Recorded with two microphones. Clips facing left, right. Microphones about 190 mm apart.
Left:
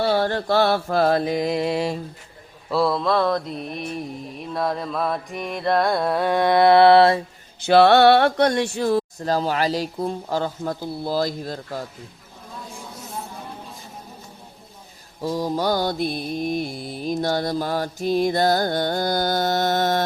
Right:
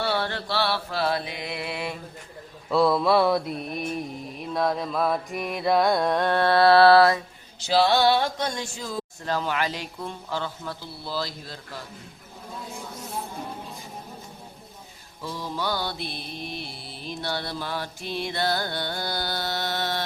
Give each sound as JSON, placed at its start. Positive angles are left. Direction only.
{"t": 0.0, "sound": "mantra", "side_deg": 40}
{"t": 2.6, "sound": "mantra", "side_deg": 0}
{"t": 7.6, "sound": "speech", "side_deg": 60}
{"t": 9.1, "sound": "mantra", "side_deg": 40}
{"t": 15.2, "sound": "mantra", "side_deg": 40}